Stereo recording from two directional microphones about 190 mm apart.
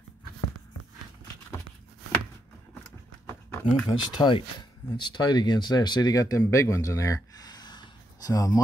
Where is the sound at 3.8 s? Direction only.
25° left (ahead or behind).